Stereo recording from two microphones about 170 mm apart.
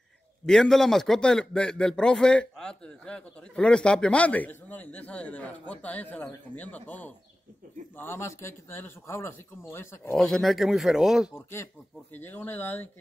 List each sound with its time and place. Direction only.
0.5 s a man's voice: 5° left (ahead or behind)
10.1 s speech: centre (ahead or behind)
11.3 s a man's voice: 15° left (ahead or behind)